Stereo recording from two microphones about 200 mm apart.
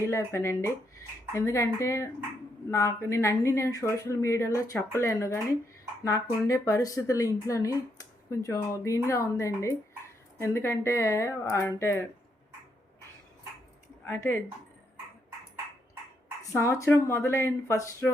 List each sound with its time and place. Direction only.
0.0 s speech: 15° left (ahead or behind)
14.0 s speech: 10° left (ahead or behind)
16.5 s speech: 15° left (ahead or behind)